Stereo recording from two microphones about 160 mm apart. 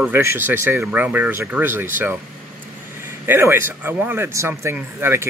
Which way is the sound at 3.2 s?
15° right (ahead or behind).